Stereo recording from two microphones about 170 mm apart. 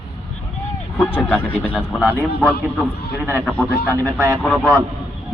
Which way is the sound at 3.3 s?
10° left (ahead or behind).